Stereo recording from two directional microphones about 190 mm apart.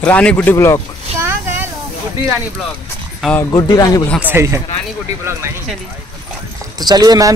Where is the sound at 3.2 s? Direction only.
10° left (ahead or behind).